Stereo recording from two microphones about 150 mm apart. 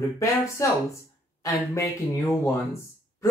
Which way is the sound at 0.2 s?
20° left (ahead or behind).